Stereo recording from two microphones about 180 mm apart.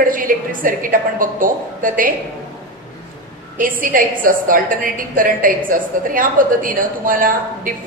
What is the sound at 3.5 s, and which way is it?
Speech, 50° right (ahead or behind).